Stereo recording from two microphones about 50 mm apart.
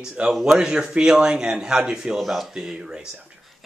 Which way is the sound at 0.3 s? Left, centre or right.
Centre.